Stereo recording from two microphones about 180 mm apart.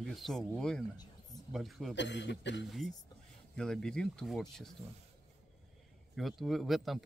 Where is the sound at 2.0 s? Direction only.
80° left.